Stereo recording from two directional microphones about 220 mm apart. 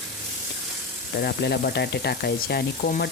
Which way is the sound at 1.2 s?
45° left (ahead or behind).